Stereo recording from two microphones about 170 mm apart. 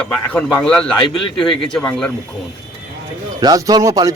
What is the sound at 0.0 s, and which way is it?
A man's voice, 5° left (ahead or behind).